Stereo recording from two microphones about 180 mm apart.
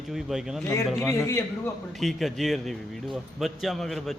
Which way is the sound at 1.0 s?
15° left (ahead or behind).